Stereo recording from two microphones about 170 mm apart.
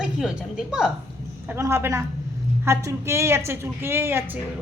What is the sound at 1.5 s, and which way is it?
A woman's voice, 15° right (ahead or behind).